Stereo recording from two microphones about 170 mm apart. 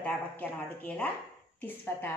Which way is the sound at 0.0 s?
10° left (ahead or behind).